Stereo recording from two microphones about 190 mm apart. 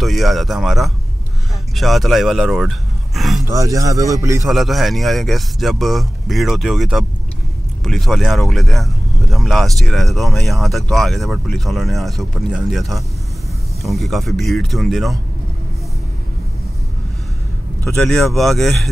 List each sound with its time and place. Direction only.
0.0 s speech: centre (ahead or behind)
3.2 s a sound: centre (ahead or behind)
3.4 s a man's voice: 15° right (ahead or behind)
4.5 s speech: centre (ahead or behind)
17.8 s speech: 5° left (ahead or behind)